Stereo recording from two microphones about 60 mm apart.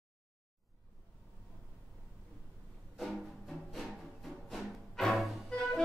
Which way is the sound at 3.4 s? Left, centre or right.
Centre.